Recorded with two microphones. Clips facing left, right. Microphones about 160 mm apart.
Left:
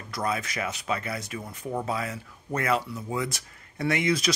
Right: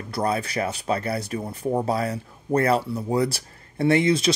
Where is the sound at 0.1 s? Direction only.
35° right (ahead or behind).